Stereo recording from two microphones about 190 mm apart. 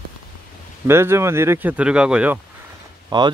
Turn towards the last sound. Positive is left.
turn(degrees=-25)  # may be behind; listen again after turning